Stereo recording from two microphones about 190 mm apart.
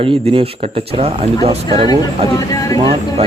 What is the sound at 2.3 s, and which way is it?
Speech, 20° left (ahead or behind).